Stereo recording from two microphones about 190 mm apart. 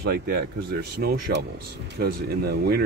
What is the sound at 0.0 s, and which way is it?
Speech, 60° right (ahead or behind).